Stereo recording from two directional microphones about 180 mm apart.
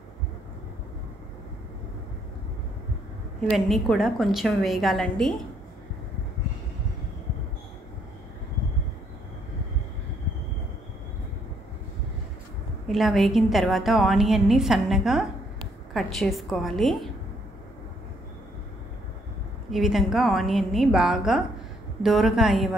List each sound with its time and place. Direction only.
3.3 s a woman's voice: centre (ahead or behind)
12.8 s a woman's voice: centre (ahead or behind)
19.7 s a woman's voice: centre (ahead or behind)